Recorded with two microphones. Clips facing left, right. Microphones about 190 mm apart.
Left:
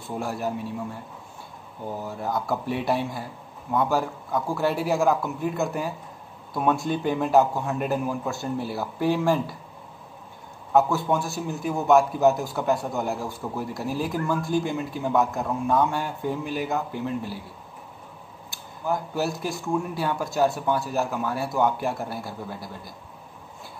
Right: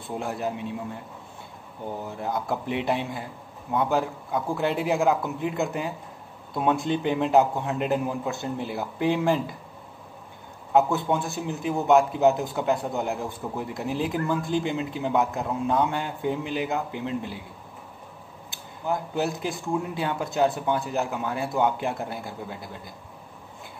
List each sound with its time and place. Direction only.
0.2 s a man's voice: 20° right (ahead or behind)
2.5 s a man's voice: 20° right (ahead or behind)
10.7 s a man's voice: 20° right (ahead or behind)
18.9 s a man's voice: 20° right (ahead or behind)